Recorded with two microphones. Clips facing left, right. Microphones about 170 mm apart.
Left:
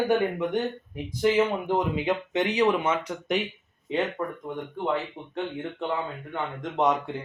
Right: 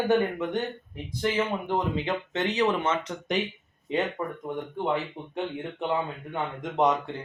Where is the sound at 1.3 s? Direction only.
15° left (ahead or behind).